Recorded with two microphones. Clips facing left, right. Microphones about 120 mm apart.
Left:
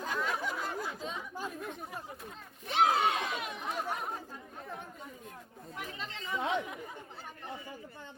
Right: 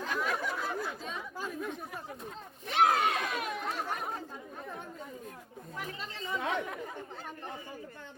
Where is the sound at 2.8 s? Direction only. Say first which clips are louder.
Right 1 dB; 50° right (ahead or behind).